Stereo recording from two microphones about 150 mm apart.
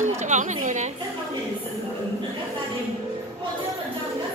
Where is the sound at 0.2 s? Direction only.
50° right (ahead or behind).